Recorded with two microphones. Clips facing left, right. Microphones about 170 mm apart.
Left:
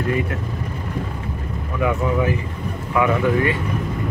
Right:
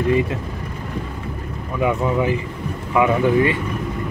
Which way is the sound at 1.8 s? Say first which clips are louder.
Right 1 dB; 20° right (ahead or behind).